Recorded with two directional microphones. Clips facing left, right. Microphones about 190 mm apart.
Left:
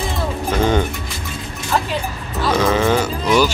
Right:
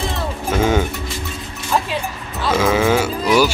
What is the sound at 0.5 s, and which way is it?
Speech, 5° right (ahead or behind).